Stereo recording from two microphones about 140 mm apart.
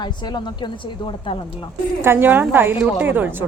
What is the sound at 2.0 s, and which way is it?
A woman's voice, 15° right (ahead or behind).